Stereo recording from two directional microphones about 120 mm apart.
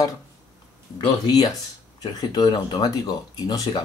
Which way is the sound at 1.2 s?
35° left (ahead or behind).